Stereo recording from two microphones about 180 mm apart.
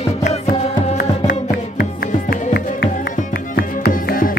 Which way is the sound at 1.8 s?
60° left (ahead or behind).